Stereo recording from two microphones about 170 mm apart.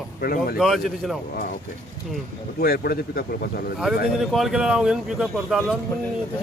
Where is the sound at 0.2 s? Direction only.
60° left (ahead or behind).